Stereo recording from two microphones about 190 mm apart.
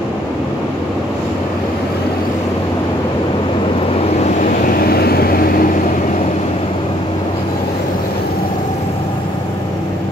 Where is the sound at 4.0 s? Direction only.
35° left (ahead or behind).